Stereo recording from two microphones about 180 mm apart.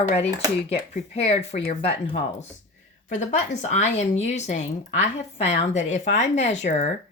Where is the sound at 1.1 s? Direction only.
35° left (ahead or behind).